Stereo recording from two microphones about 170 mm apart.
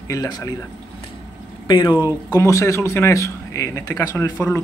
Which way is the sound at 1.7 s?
25° left (ahead or behind).